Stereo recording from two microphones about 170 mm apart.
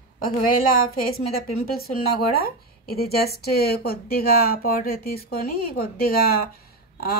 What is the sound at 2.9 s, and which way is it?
A woman's voice, 65° left (ahead or behind).